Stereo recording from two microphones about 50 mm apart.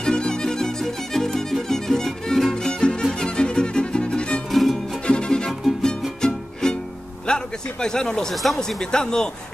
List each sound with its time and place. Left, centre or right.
0.0 s music: centre
4.5 s music: centre
5.0 s music: centre
5.5 s music: centre
6.2 s music: centre
7.2 s a man's voice: centre